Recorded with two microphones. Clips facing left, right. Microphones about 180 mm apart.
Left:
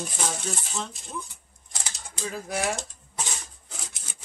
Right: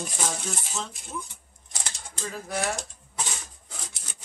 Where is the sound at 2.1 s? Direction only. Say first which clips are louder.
Left 1 dB; 10° left (ahead or behind).